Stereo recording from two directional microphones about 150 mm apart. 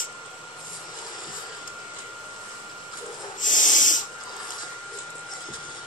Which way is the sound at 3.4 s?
60° left (ahead or behind).